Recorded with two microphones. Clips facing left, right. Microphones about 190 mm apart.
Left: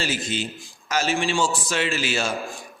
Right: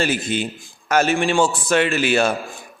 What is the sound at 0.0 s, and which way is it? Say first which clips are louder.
A man's voice: right 6 dB; 55° right (ahead or behind).